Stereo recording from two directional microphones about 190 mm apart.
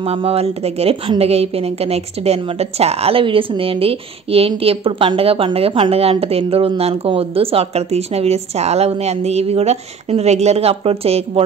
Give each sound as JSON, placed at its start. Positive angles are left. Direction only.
{"t": 0.0, "sound": "a woman's voice", "side_deg": -30}